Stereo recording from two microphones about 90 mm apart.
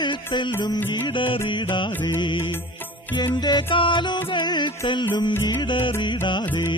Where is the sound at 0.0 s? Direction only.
60° left (ahead or behind).